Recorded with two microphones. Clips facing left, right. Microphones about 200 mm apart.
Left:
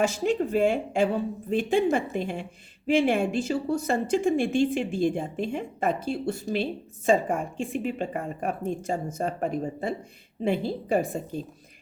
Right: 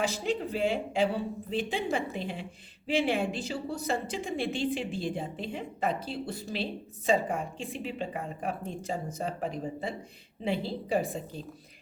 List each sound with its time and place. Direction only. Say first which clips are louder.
0.0 s a woman's voice: left 6 dB; 50° left (ahead or behind)